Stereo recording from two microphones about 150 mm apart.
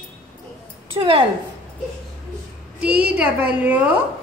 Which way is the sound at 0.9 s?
35° right (ahead or behind).